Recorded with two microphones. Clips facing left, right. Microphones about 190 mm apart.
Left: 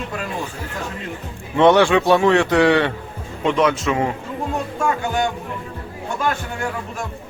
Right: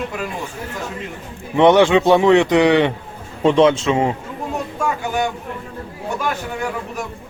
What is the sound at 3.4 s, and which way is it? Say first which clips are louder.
Speech: right 5 dB; 30° right (ahead or behind).